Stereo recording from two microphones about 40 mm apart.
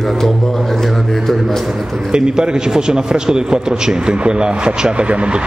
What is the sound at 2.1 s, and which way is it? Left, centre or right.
A man's voice, right.